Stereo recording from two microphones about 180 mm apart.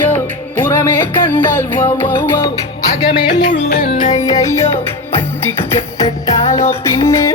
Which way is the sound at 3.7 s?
55° left (ahead or behind).